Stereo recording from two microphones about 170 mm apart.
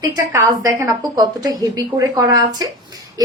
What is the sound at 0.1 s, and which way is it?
A woman's voice, 20° right (ahead or behind).